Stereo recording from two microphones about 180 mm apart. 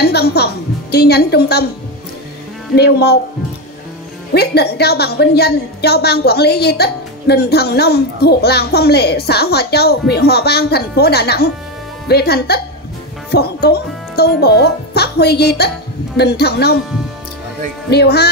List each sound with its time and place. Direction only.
0.0 s a woman's voice: 65° left (ahead or behind)
2.7 s a woman's voice: 65° left (ahead or behind)
4.3 s a woman's voice: 65° left (ahead or behind)
17.8 s a woman's voice: 65° left (ahead or behind)